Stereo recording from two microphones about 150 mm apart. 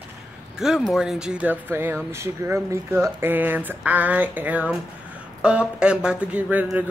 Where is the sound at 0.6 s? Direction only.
5° right (ahead or behind).